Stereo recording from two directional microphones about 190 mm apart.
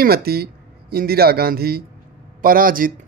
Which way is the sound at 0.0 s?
55° right (ahead or behind).